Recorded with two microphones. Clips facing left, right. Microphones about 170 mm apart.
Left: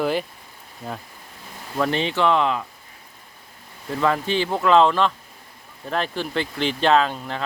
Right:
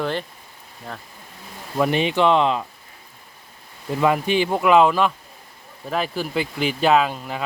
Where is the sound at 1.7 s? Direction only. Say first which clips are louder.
Right 3 dB; 15° right (ahead or behind).